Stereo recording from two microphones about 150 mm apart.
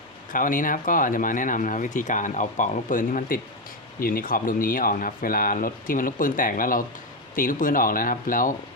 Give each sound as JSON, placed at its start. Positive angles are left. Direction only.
{"t": 0.3, "sound": "speech", "side_deg": 65}